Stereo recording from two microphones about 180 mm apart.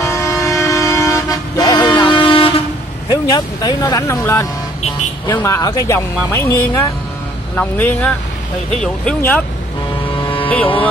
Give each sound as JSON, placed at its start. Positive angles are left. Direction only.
{"t": 0.0, "sound": "toot", "side_deg": 15}
{"t": 3.1, "sound": "speech", "side_deg": 20}
{"t": 10.2, "sound": "vehicle", "side_deg": 30}